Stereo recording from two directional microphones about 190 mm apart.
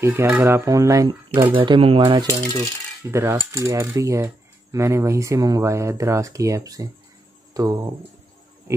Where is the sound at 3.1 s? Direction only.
15° right (ahead or behind).